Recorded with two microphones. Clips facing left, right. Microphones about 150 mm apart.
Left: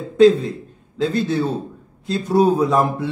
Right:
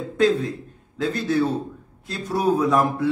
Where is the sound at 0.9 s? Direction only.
25° left (ahead or behind).